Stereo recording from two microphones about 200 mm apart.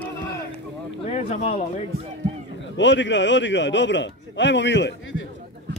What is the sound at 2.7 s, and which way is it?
A man's voice, 65° left (ahead or behind).